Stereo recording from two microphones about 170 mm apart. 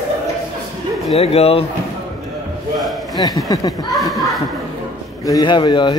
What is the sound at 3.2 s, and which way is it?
Speech, 20° left (ahead or behind).